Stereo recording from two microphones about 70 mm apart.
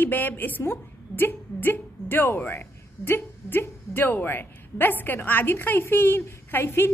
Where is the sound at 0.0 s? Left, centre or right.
Left.